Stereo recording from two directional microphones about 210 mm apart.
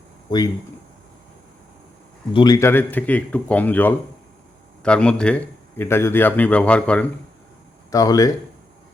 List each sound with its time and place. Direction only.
0.3 s speech: 20° left (ahead or behind)
2.3 s a man's voice: 20° left (ahead or behind)
7.9 s speech: 15° left (ahead or behind)